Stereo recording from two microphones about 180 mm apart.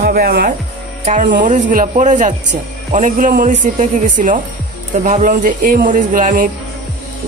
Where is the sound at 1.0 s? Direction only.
45° right (ahead or behind).